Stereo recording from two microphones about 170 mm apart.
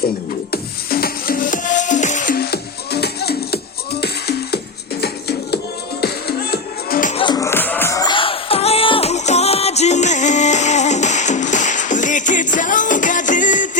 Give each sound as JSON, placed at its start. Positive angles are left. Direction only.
{"t": 0.5, "sound": "music", "side_deg": 60}
{"t": 7.1, "sound": "music", "side_deg": 30}
{"t": 7.3, "sound": "music", "side_deg": 15}